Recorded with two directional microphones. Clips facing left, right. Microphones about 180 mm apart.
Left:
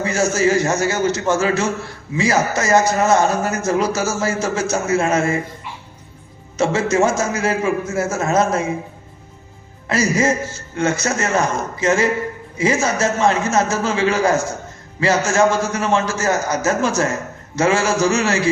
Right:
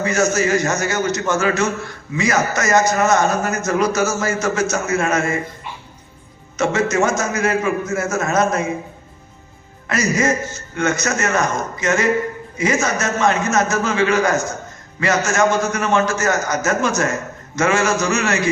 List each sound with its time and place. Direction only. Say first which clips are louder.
0.0 s a man's voice: even; 30° left (ahead or behind)
6.6 s a man's voice: left 1 dB; 30° left (ahead or behind)
9.8 s a man's voice: left 1 dB; 30° left (ahead or behind)